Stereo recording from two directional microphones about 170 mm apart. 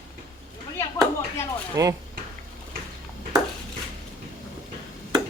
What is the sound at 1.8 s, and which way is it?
Speech, 20° right (ahead or behind).